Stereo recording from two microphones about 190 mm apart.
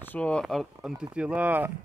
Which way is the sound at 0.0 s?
10° left (ahead or behind).